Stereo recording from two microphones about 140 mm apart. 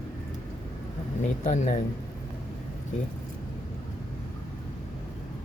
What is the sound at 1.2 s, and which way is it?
Speech, 55° left (ahead or behind).